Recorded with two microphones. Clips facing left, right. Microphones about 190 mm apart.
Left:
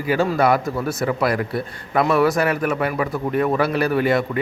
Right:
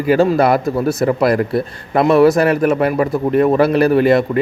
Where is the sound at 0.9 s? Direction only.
40° right (ahead or behind).